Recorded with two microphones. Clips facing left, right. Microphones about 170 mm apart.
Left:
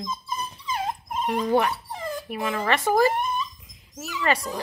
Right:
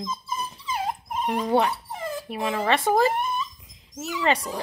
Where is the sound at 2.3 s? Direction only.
20° right (ahead or behind).